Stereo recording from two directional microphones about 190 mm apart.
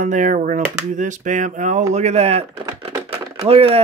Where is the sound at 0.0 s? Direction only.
40° right (ahead or behind).